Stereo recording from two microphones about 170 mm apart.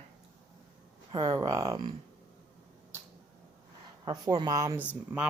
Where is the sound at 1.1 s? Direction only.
25° right (ahead or behind).